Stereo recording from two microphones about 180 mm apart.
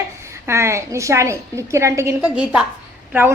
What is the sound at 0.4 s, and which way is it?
A woman's voice, 15° right (ahead or behind).